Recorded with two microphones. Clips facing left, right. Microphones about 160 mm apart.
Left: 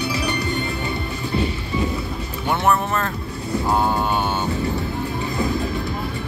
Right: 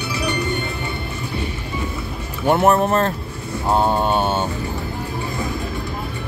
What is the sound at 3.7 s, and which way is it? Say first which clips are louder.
Mantra: right 4 dB; 25° right (ahead or behind).